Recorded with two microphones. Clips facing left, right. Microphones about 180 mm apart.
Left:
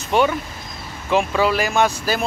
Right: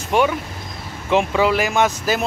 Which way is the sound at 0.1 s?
10° right (ahead or behind).